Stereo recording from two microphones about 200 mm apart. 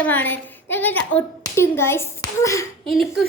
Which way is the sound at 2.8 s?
Centre (ahead or behind).